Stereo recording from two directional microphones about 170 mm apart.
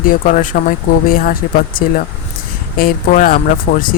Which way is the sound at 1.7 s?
55° left (ahead or behind).